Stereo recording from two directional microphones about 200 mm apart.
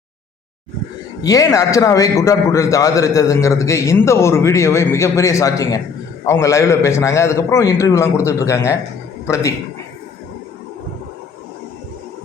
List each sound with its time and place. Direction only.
1.2 s a man's voice: 15° left (ahead or behind)